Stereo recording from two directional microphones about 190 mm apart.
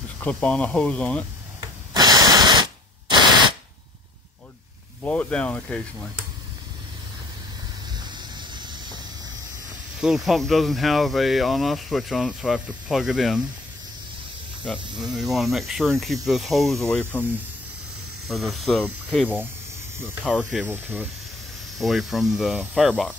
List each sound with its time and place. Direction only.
0.2 s speech: 5° left (ahead or behind)
2.0 s a sound: 20° right (ahead or behind)
5.0 s speech: 10° left (ahead or behind)
8.1 s a sound: 25° right (ahead or behind)
9.9 s speech: centre (ahead or behind)
14.8 s speech: 25° right (ahead or behind)
15.1 s speech: centre (ahead or behind)
18.3 s speech: centre (ahead or behind)
20.3 s speech: 10° right (ahead or behind)
21.7 s speech: centre (ahead or behind)